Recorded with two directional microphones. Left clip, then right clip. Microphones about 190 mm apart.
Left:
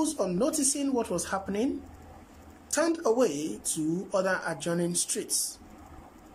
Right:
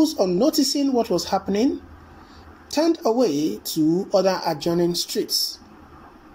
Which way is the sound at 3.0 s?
10° right (ahead or behind).